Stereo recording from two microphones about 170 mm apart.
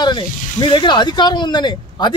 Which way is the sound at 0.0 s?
25° left (ahead or behind).